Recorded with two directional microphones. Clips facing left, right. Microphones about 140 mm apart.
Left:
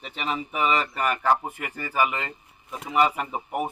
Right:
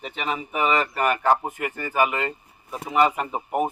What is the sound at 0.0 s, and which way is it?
Speech, 45° right (ahead or behind).